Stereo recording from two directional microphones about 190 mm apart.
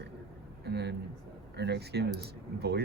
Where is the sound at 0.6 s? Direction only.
60° right (ahead or behind).